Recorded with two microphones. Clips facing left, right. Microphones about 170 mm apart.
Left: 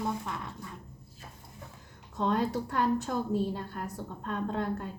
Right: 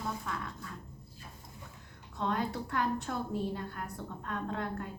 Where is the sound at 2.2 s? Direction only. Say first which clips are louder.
Left 5 dB; 40° left (ahead or behind).